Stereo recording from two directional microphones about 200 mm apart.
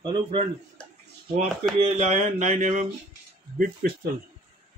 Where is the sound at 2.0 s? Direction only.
35° right (ahead or behind).